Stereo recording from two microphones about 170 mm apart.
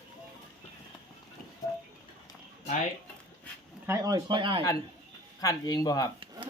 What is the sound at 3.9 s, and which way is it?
Speech, 20° right (ahead or behind).